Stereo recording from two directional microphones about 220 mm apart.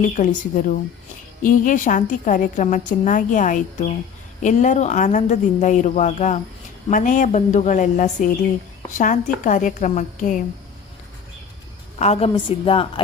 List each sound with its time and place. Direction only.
0.0 s a woman's voice: 35° left (ahead or behind)
11.9 s a woman's voice: 30° left (ahead or behind)